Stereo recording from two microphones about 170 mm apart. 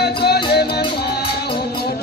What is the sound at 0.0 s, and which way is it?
Music, 70° left (ahead or behind).